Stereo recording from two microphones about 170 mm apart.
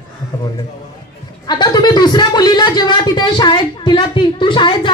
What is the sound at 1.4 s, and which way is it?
A man's voice, 25° left (ahead or behind).